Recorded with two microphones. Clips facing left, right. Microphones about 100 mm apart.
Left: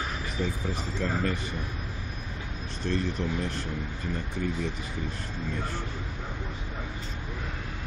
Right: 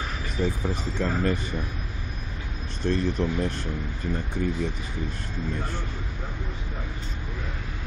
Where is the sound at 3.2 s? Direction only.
50° right (ahead or behind).